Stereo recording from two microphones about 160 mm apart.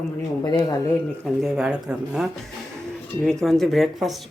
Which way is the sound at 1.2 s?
Centre (ahead or behind).